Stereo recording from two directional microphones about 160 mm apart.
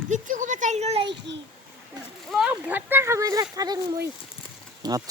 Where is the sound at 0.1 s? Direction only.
50° right (ahead or behind); by 1.2 s 35° right (ahead or behind).